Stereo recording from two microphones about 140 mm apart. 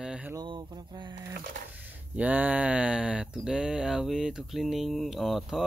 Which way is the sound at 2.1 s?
10° right (ahead or behind).